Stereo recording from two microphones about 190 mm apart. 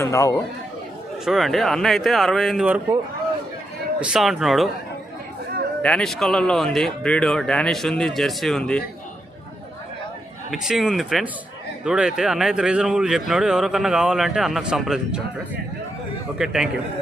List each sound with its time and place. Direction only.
0.0 s a man's voice: 15° left (ahead or behind)
1.2 s speech: centre (ahead or behind)
4.0 s speech: centre (ahead or behind)
5.8 s speech: 5° left (ahead or behind)
10.5 s speech: centre (ahead or behind)
16.4 s speech: 5° right (ahead or behind)